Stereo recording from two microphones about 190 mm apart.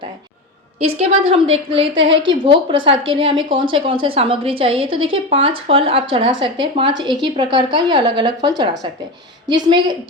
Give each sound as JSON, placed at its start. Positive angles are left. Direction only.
{"t": 0.8, "sound": "a woman's voice", "side_deg": -35}